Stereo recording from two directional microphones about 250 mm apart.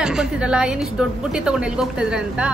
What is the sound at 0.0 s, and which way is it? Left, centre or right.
A woman's voice, centre.